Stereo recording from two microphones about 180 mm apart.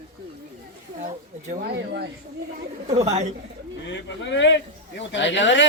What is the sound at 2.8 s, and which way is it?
Speech, 35° right (ahead or behind).